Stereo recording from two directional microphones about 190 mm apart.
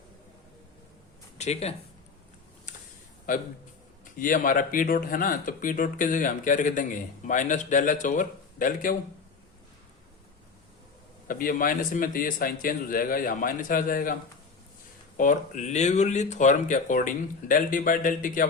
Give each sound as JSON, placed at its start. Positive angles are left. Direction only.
{"t": 1.4, "sound": "speech", "side_deg": 35}
{"t": 3.3, "sound": "speech", "side_deg": 45}
{"t": 11.3, "sound": "speech", "side_deg": 45}
{"t": 15.2, "sound": "speech", "side_deg": 40}